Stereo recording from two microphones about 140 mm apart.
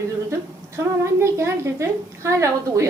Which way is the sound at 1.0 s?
20° right (ahead or behind).